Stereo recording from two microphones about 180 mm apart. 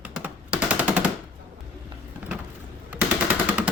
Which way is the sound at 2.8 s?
10° right (ahead or behind).